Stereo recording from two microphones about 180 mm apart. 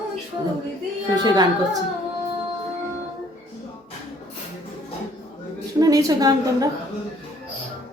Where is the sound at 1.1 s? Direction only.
20° right (ahead or behind).